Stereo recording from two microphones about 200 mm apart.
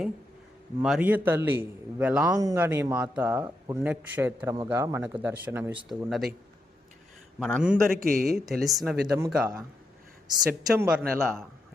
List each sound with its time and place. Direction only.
0.8 s a man's voice: 5° right (ahead or behind)
5.9 s speech: centre (ahead or behind)
7.3 s speech: centre (ahead or behind)
7.9 s a man's voice: 45° right (ahead or behind)
8.2 s speech: centre (ahead or behind)
9.1 s a man's voice: 10° right (ahead or behind)